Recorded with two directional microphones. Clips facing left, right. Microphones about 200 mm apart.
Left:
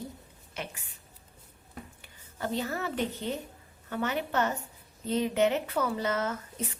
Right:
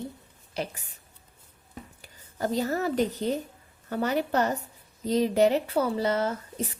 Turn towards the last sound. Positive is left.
turn(degrees=-30)  # may be behind; listen again after turning